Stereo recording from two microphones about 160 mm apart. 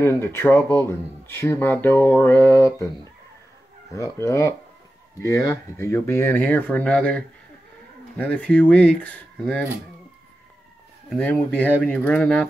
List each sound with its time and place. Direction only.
0.0 s speech: 15° left (ahead or behind)
3.9 s speech: 20° left (ahead or behind)
11.1 s speech: 10° left (ahead or behind)